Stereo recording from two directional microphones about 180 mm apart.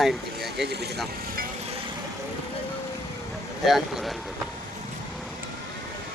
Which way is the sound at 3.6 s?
Centre (ahead or behind).